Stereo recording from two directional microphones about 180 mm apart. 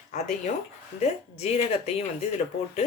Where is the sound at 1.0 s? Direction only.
35° left (ahead or behind).